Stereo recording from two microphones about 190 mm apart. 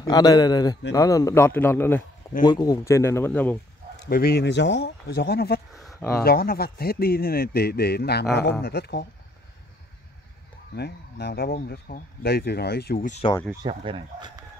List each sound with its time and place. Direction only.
0.0 s a man's voice: 20° left (ahead or behind)
4.0 s speech: 55° left (ahead or behind)
10.8 s speech: 60° left (ahead or behind)
13.6 s speech: 25° right (ahead or behind)